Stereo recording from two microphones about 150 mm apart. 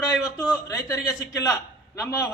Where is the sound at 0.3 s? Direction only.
25° left (ahead or behind).